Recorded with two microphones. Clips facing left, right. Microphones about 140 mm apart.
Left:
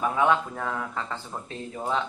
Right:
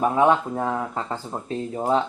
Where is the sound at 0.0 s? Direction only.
35° right (ahead or behind).